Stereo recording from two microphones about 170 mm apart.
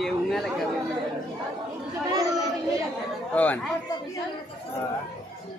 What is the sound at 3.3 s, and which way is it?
Speech, 10° left (ahead or behind).